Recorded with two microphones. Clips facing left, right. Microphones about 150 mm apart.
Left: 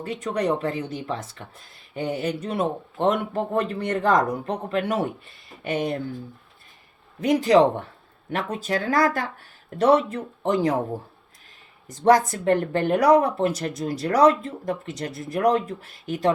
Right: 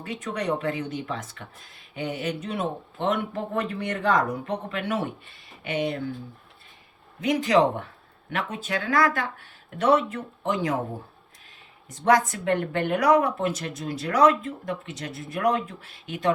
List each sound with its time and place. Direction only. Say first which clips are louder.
0.0 s speech: left 4 dB; 35° left (ahead or behind)
7.2 s speech: left 4 dB; 35° left (ahead or behind)
11.9 s speech: left 3 dB; 35° left (ahead or behind)